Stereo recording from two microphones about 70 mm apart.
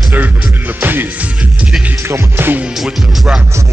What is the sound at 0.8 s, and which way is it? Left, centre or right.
Music, right.